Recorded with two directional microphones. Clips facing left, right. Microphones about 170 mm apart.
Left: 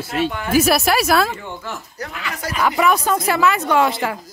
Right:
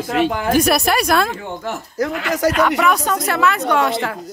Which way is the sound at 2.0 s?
85° right.